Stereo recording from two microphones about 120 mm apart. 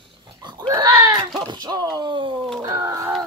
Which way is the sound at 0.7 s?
25° right (ahead or behind).